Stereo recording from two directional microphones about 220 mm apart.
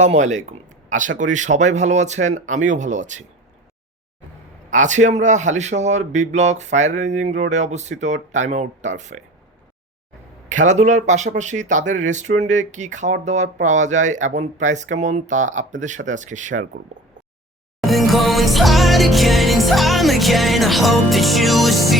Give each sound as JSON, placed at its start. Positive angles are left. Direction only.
{"t": 0.0, "sound": "speech", "side_deg": -30}
{"t": 4.7, "sound": "speech", "side_deg": -35}
{"t": 10.5, "sound": "speech", "side_deg": -35}
{"t": 17.7, "sound": "music", "side_deg": 0}